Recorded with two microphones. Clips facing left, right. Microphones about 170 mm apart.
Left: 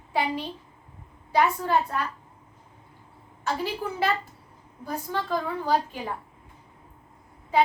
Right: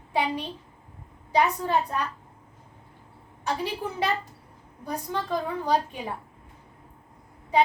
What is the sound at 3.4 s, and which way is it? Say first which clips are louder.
A woman's voice: even; 15° right (ahead or behind).